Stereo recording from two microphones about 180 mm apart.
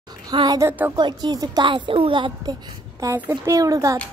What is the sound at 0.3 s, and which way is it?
Speech, 20° right (ahead or behind).